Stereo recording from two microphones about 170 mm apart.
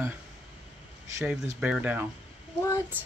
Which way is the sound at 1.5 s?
5° right (ahead or behind).